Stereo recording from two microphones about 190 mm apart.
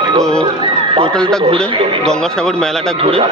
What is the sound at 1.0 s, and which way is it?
A man's voice, 5° left (ahead or behind).